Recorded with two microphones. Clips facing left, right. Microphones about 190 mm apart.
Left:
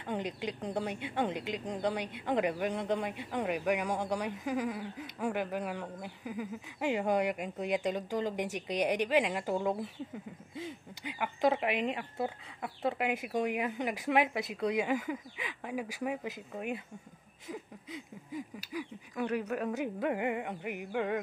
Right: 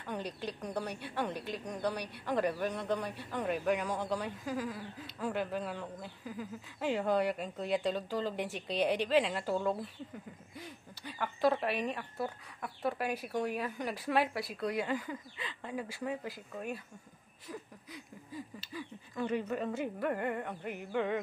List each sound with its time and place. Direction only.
0.0 s a woman's voice: 20° left (ahead or behind)